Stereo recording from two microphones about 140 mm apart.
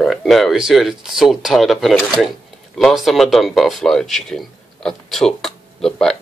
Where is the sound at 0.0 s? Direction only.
Centre (ahead or behind).